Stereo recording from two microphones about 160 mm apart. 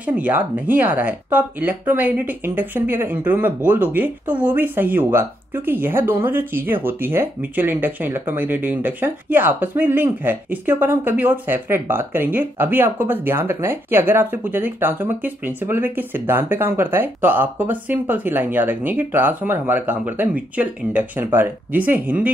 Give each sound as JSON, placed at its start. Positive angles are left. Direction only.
{"t": 0.0, "sound": "speech", "side_deg": -10}